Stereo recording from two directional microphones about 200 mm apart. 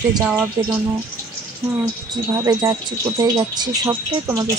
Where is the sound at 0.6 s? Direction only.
20° right (ahead or behind).